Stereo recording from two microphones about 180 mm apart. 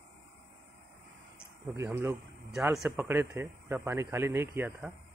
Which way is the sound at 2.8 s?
10° right (ahead or behind).